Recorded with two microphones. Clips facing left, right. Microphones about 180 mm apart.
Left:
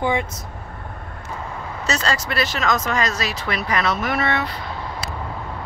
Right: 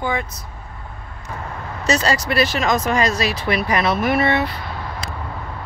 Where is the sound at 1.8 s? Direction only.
15° right (ahead or behind).